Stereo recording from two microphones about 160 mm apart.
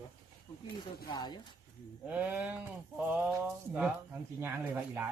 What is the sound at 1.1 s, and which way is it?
Speech, 25° left (ahead or behind).